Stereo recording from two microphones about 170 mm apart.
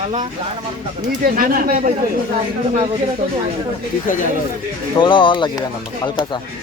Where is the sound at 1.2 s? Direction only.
55° right (ahead or behind).